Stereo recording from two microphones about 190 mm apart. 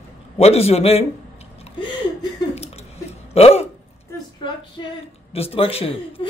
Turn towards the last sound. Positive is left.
turn(degrees=30)  # may be behind; listen again after turning